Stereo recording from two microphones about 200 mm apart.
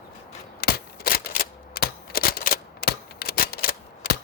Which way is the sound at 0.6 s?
50° left (ahead or behind).